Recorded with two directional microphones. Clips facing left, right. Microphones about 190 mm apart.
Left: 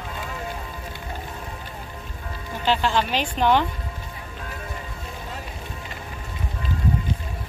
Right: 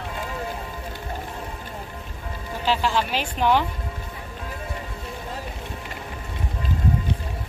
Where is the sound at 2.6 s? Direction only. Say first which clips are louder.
Left 1 dB; 5° right (ahead or behind).